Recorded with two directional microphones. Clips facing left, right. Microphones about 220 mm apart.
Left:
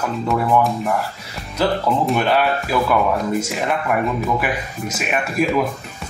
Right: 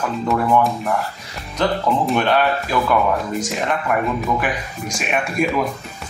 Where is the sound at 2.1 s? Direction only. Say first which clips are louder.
Right 1 dB; 5° left (ahead or behind).